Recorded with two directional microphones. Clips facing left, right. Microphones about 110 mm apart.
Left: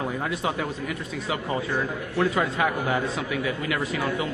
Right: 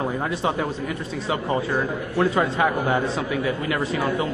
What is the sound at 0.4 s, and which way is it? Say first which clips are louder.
Speech: right 4 dB; 35° right (ahead or behind).